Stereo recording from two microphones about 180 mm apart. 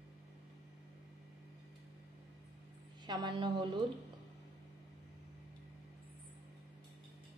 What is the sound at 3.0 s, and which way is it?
Speech, 25° right (ahead or behind).